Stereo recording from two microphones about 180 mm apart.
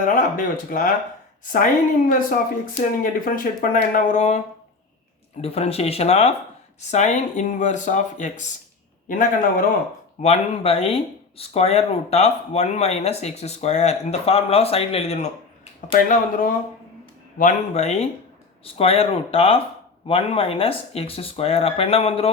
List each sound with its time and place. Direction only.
0.0 s speech: 45° left (ahead or behind)
10.2 s speech: 35° left (ahead or behind)
15.9 s speech: 50° left (ahead or behind); by 22.3 s 35° left (ahead or behind)